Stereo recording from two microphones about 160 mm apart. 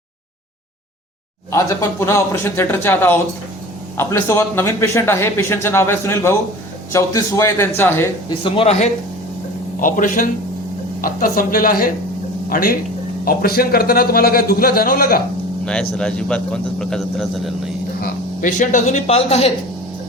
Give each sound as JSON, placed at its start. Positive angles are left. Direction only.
{"t": 1.5, "sound": "a man's voice", "side_deg": 20}
{"t": 8.3, "sound": "speech", "side_deg": 35}
{"t": 9.8, "sound": "a man's voice", "side_deg": 55}
{"t": 15.6, "sound": "speech", "side_deg": 5}
{"t": 18.0, "sound": "speech", "side_deg": 55}